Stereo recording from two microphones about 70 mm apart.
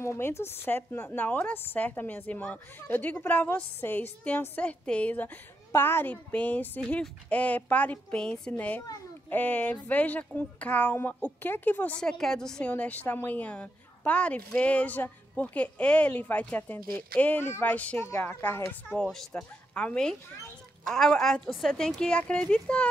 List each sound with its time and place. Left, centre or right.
0.0 s a woman's voice: left; by 8.5 s centre
8.5 s a woman's voice: left
12.0 s a woman's voice: centre
12.6 s a woman's voice: left
17.7 s a woman's voice: left
18.0 s a woman's voice: left
19.0 s speech: centre
19.7 s a woman's voice: centre